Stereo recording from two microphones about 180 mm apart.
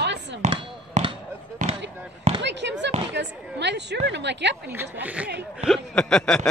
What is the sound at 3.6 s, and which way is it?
Speech, 75° right (ahead or behind).